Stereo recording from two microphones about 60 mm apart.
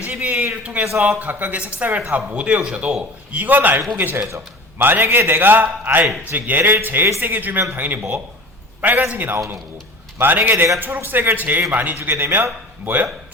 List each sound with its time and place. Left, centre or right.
0.0 s a sound: right
0.6 s a man's voice: right
4.8 s a man's voice: right
12.8 s speech: right